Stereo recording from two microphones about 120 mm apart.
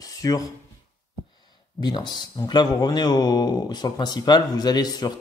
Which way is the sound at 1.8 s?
35° left (ahead or behind).